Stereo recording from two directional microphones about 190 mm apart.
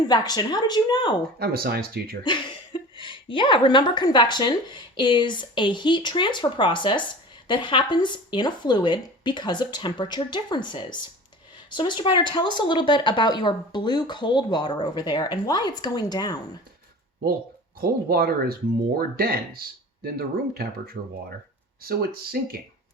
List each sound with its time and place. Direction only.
0.1 s speech: 20° left (ahead or behind)
1.4 s speech: 55° right (ahead or behind)
3.0 s speech: 25° left (ahead or behind)
17.7 s speech: 50° right (ahead or behind)